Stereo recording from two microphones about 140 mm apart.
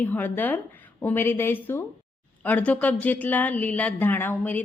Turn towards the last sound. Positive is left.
turn(degrees=15)  # may be behind; listen again after turning